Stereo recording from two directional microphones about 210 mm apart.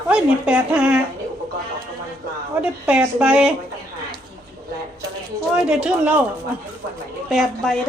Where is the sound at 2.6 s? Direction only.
5° right (ahead or behind).